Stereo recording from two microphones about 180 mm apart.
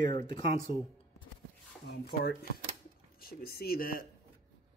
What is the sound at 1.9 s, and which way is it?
A man's voice, 60° left (ahead or behind).